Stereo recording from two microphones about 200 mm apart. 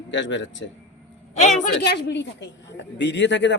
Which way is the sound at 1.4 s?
35° left (ahead or behind).